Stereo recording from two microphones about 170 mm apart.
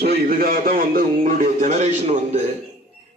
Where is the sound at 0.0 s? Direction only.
65° right (ahead or behind).